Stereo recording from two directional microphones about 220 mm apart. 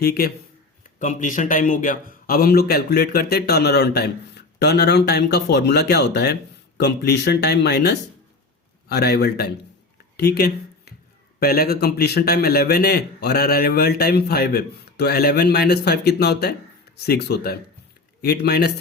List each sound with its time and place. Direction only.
0.0 s a man's voice: 45° left (ahead or behind)
10.2 s a sound: 45° left (ahead or behind)
11.3 s a man's voice: 45° left (ahead or behind)